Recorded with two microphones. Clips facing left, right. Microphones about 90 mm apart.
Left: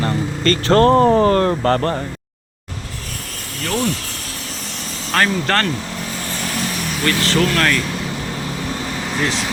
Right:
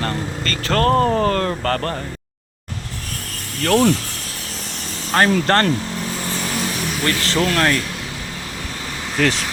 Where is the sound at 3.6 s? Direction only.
60° right (ahead or behind).